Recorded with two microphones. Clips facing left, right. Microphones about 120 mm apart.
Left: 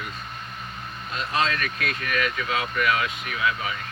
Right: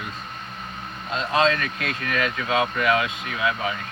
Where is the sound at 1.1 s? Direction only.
25° right (ahead or behind).